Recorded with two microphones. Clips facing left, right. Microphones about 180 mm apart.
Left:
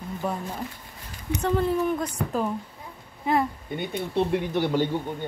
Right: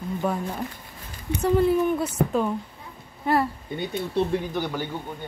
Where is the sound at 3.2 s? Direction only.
5° right (ahead or behind).